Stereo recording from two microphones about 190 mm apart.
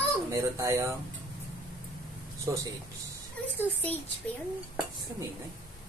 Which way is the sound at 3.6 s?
10° left (ahead or behind).